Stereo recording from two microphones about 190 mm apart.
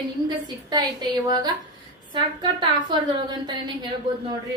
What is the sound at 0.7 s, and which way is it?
A woman's voice, 20° right (ahead or behind).